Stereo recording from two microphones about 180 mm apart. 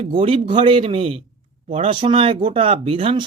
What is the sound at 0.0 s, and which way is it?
Speech, 30° right (ahead or behind).